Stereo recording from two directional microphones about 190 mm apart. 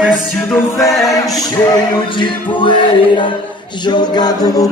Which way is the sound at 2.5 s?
25° left (ahead or behind).